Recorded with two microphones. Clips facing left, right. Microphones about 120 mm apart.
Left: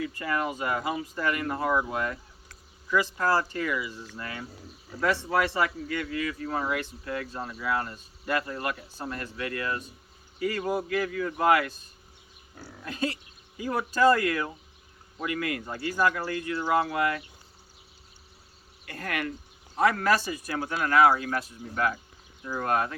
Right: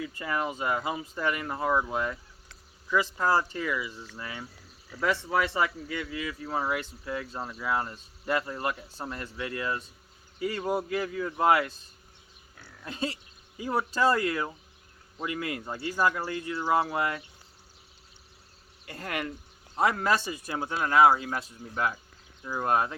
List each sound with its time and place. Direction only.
0.3 s speech: 20° right (ahead or behind)
5.3 s speech: 20° right (ahead or behind)
12.5 s speech: 30° left (ahead or behind)
12.8 s speech: 30° right (ahead or behind)
18.9 s speech: 25° right (ahead or behind)